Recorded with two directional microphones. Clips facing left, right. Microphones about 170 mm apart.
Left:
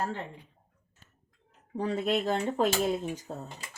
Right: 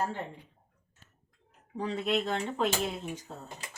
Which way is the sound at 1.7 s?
45° left (ahead or behind).